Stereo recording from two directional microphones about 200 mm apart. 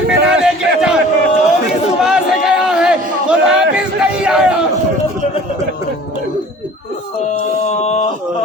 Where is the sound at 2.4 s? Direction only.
5° right (ahead or behind).